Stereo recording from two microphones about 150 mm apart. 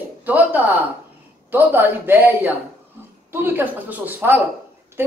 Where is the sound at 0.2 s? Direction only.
10° right (ahead or behind).